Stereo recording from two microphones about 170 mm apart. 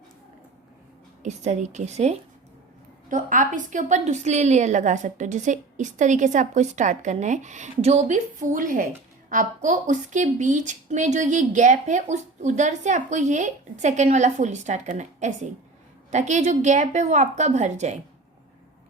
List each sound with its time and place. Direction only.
1.2 s a woman's voice: 45° right (ahead or behind)